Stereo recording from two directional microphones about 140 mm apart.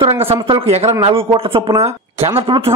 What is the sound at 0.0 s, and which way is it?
A man's voice, 40° right (ahead or behind).